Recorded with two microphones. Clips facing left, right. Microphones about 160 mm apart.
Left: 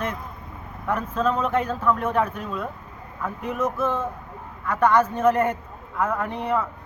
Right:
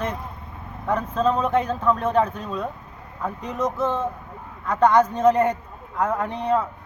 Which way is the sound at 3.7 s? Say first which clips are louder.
Right 1 dB; 20° right (ahead or behind).